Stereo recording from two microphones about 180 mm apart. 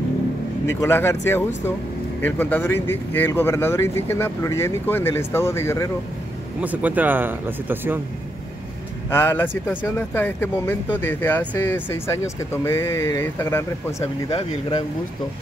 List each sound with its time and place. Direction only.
0.7 s speech: 15° left (ahead or behind)
6.6 s speech: 10° right (ahead or behind)
9.1 s speech: 10° left (ahead or behind)
14.3 s speech: 25° left (ahead or behind)